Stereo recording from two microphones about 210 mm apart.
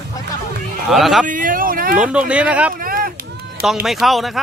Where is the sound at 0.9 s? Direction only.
Centre (ahead or behind).